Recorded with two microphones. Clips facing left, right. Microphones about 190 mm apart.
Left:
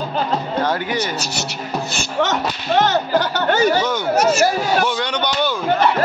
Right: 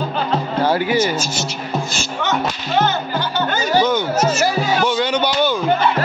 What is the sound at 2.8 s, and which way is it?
Music, 70° left (ahead or behind).